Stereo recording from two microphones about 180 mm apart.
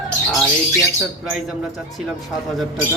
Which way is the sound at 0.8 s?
Centre (ahead or behind).